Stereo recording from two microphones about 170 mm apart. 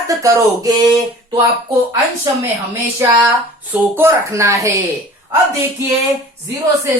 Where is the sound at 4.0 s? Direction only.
15° right (ahead or behind).